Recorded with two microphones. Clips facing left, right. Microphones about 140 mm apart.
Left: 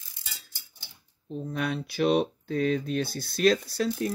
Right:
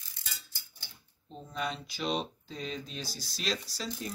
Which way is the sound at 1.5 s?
60° left (ahead or behind).